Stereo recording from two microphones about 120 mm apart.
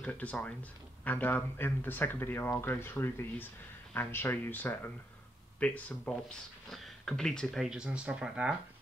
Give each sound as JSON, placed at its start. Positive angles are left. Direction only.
{"t": 0.0, "sound": "speech", "side_deg": 10}